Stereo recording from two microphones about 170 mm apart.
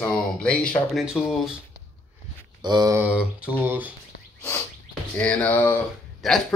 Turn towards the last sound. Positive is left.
turn(degrees=0)  # may be behind; listen again after turning